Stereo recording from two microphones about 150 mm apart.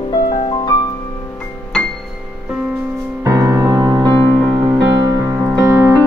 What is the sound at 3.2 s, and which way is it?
Music, 20° right (ahead or behind).